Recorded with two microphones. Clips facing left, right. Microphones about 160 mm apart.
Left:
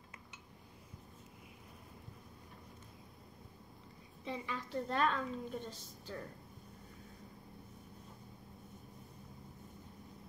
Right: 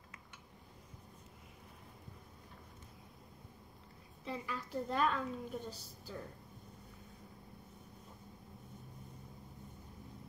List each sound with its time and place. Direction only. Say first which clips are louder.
4.2 s a woman's voice: left 1 dB; 5° right (ahead or behind)